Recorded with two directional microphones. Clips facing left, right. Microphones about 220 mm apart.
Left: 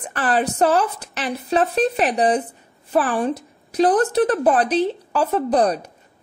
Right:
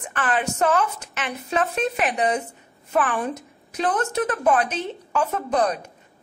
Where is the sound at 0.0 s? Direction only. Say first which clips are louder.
Left 4 dB; 35° left (ahead or behind).